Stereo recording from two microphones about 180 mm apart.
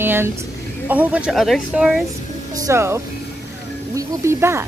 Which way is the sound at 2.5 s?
15° right (ahead or behind).